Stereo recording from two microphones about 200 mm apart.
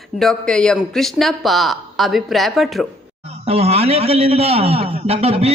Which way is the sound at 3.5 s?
30° right (ahead or behind).